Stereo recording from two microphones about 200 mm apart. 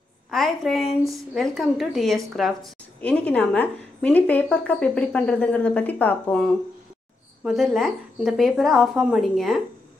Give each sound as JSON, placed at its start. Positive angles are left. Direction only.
{"t": 0.3, "sound": "a woman's voice", "side_deg": 0}